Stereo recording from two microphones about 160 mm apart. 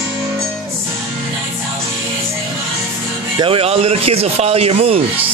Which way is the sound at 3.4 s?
35° right (ahead or behind).